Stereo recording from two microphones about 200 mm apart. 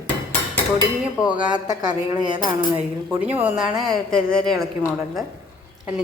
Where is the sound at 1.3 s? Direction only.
25° right (ahead or behind).